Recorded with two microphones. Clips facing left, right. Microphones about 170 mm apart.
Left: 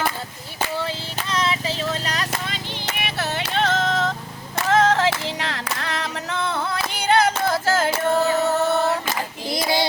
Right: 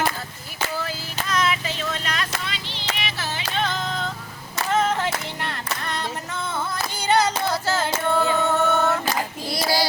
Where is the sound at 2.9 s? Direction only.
60° left (ahead or behind).